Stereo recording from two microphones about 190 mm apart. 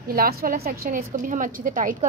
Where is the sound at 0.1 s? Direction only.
50° right (ahead or behind).